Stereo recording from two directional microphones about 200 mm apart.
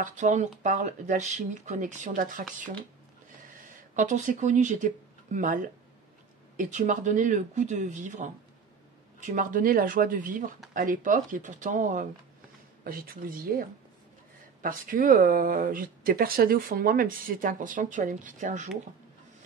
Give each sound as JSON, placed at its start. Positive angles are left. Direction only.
{"t": 0.0, "sound": "speech", "side_deg": -35}